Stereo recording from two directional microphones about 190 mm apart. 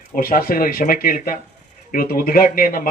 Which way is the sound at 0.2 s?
50° left (ahead or behind).